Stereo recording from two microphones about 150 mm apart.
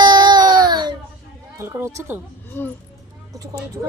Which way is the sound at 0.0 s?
30° right (ahead or behind).